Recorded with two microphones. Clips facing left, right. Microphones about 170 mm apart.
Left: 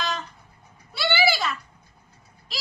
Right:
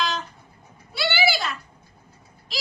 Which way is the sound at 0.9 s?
Centre (ahead or behind).